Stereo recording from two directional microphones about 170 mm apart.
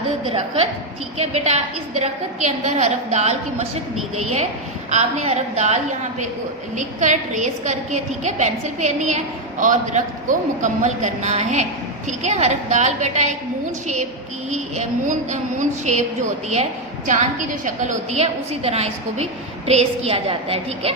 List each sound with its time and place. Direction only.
1.2 s a woman's voice: 40° right (ahead or behind)
4.9 s a woman's voice: 40° right (ahead or behind)
17.1 s a woman's voice: 45° right (ahead or behind)